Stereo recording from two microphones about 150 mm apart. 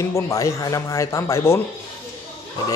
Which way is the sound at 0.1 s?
20° left (ahead or behind).